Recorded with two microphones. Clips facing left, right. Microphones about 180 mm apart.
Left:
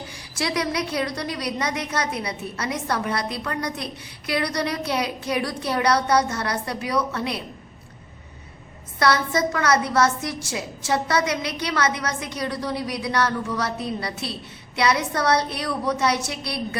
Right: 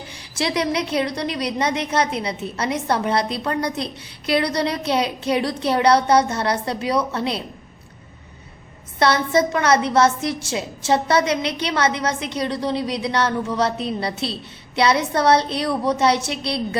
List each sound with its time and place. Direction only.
0.1 s a woman's voice: 25° right (ahead or behind)
9.0 s a woman's voice: 25° right (ahead or behind)